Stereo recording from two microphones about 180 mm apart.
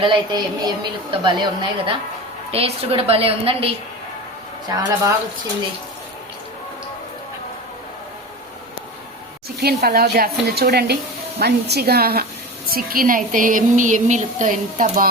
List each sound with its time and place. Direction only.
0.0 s speech: 25° right (ahead or behind)
2.5 s a woman's voice: 35° right (ahead or behind)
4.7 s speech: 20° right (ahead or behind)
9.6 s a woman's voice: 60° right (ahead or behind)